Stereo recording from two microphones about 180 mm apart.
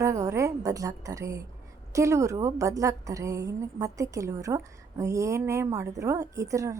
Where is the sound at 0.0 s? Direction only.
15° right (ahead or behind).